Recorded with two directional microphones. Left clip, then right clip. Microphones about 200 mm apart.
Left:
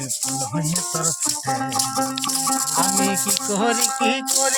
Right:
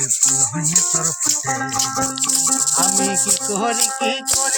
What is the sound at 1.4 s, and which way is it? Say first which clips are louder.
Music: right 2 dB; 30° left (ahead or behind).